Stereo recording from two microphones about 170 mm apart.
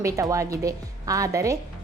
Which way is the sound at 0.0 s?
20° right (ahead or behind).